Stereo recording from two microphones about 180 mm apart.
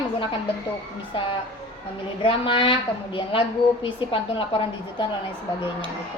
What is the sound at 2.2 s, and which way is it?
Speech, 30° left (ahead or behind).